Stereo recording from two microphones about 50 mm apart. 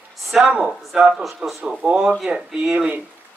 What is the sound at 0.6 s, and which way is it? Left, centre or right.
Speech, centre.